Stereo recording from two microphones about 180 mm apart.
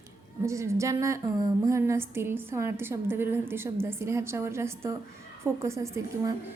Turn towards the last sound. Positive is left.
turn(degrees=-15)  # may be behind; listen again after turning